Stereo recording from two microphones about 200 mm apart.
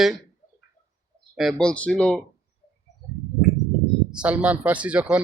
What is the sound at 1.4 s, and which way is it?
Speech, centre (ahead or behind).